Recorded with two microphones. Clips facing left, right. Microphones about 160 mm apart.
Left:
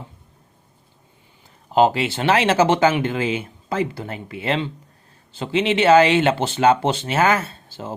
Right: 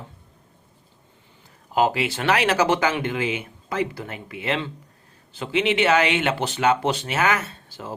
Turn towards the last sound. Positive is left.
turn(degrees=25)  # may be behind; listen again after turning